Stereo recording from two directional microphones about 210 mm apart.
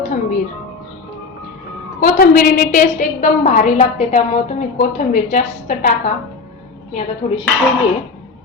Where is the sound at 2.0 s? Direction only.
40° left (ahead or behind).